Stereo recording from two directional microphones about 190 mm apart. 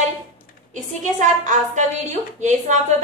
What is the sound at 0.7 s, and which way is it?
A woman's voice, 40° right (ahead or behind).